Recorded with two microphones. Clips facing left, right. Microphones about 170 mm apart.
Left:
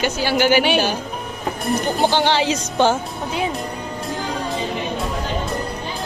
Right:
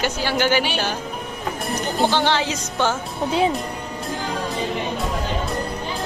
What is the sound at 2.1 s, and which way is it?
Speech, 15° left (ahead or behind).